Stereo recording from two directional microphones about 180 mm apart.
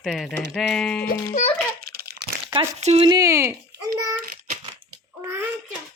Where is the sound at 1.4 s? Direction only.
50° left (ahead or behind).